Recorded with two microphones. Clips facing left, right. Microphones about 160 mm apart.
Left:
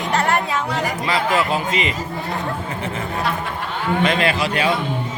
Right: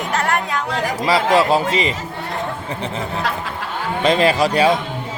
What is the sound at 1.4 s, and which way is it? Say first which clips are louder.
Speech: right 4 dB; 35° right (ahead or behind).